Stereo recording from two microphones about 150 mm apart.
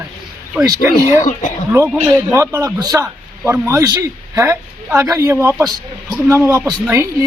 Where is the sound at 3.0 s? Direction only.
15° right (ahead or behind).